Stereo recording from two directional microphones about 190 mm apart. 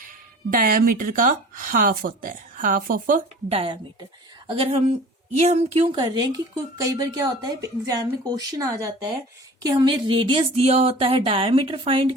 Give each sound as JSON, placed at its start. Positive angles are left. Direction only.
{"t": 0.5, "sound": "speech", "side_deg": -50}
{"t": 3.5, "sound": "a woman's voice", "side_deg": -30}